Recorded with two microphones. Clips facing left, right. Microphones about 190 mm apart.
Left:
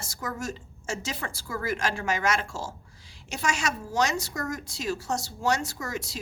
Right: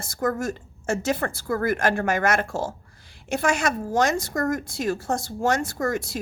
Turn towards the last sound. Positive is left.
turn(degrees=-55)  # may be behind; listen again after turning